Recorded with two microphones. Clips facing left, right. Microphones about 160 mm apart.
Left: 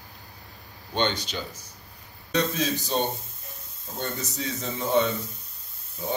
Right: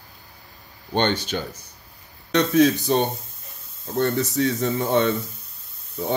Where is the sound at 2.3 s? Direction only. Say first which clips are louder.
Right 9 dB; 70° right (ahead or behind).